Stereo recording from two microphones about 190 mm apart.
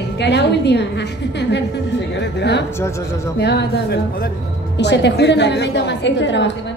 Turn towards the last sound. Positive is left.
turn(degrees=70)  # may be behind; listen again after turning